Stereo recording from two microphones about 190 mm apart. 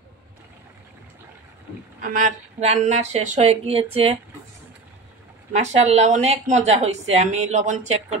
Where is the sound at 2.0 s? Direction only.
45° right (ahead or behind).